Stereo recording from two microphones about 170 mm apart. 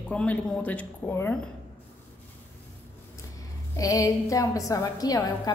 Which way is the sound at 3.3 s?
20° left (ahead or behind).